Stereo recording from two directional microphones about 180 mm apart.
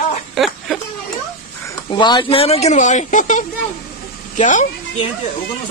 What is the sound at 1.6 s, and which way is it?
A man's voice, 20° left (ahead or behind).